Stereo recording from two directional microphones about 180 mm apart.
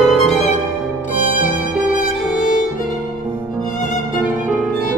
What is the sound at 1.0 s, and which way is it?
Music, 5° right (ahead or behind).